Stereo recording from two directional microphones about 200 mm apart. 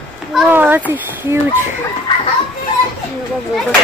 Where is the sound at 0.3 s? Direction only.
5° right (ahead or behind).